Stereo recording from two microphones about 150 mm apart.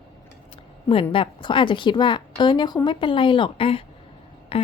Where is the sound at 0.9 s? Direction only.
35° left (ahead or behind).